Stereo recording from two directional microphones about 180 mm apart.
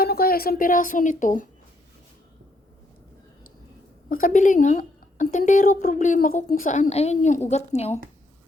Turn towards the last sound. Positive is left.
turn(degrees=35)  # may be behind; listen again after turning